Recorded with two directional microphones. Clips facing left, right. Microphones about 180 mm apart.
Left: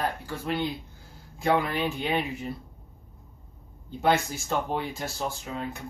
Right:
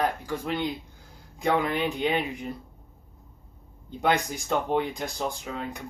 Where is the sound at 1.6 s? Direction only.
20° right (ahead or behind).